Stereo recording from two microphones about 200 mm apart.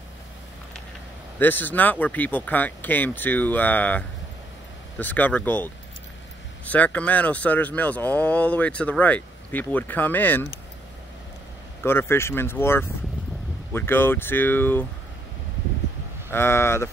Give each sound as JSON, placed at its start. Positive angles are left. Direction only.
{"t": 1.4, "sound": "speech", "side_deg": 10}
{"t": 11.8, "sound": "speech", "side_deg": 10}
{"t": 16.3, "sound": "speech", "side_deg": 10}